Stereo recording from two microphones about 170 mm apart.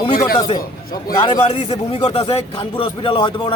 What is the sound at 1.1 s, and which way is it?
Speech, 30° left (ahead or behind).